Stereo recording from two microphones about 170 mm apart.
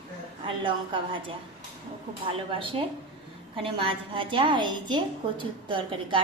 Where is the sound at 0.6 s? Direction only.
30° right (ahead or behind).